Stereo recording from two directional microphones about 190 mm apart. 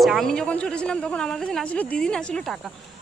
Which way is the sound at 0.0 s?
Centre (ahead or behind).